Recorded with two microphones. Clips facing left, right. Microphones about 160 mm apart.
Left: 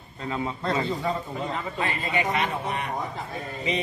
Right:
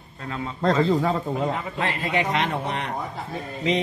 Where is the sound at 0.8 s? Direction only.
80° right.